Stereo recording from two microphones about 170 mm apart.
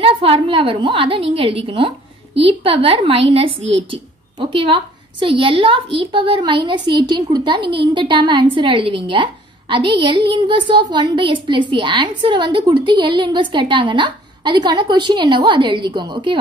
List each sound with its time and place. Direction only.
0.0 s a woman's voice: 35° right (ahead or behind)